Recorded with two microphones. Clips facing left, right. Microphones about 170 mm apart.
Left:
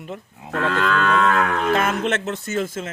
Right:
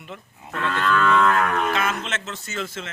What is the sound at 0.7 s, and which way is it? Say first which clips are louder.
Livestock: even; 90° left.